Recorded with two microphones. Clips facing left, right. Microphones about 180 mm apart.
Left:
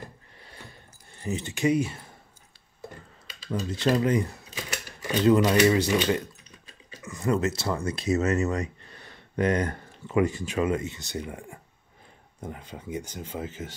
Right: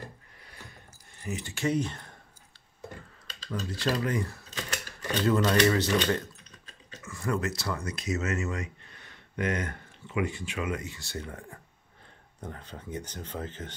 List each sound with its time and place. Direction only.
1.2 s speech: 25° left (ahead or behind); by 2.1 s 5° left (ahead or behind)
3.7 s speech: 20° left (ahead or behind)